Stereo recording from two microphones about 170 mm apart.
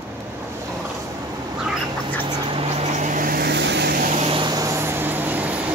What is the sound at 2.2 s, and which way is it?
Duck, 30° right (ahead or behind).